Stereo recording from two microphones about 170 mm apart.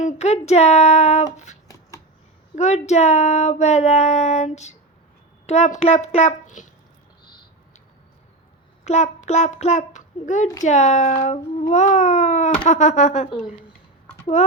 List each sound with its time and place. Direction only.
0.0 s speech: 40° left (ahead or behind)
2.6 s speech: 40° left (ahead or behind)
8.8 s a child's voice: 40° left (ahead or behind)
14.4 s speech: 45° left (ahead or behind)